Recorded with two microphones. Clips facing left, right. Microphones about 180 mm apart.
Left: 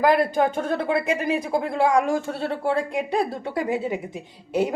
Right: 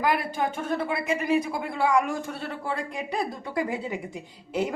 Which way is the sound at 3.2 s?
25° left (ahead or behind).